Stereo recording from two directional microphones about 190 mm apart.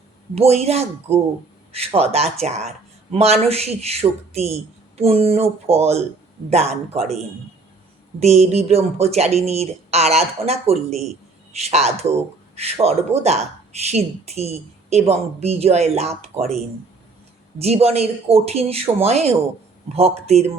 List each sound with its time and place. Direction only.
0.3 s speech: 35° right (ahead or behind)
8.2 s speech: 35° right (ahead or behind)
17.6 s speech: 35° right (ahead or behind)